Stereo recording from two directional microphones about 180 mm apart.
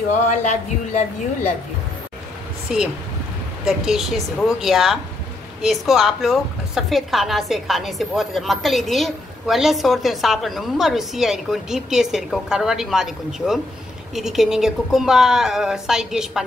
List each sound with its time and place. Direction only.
0.1 s speech: 40° left (ahead or behind)
2.7 s a woman's voice: 5° right (ahead or behind)